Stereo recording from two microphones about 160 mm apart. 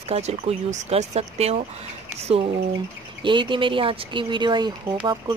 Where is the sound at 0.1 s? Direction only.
40° right (ahead or behind).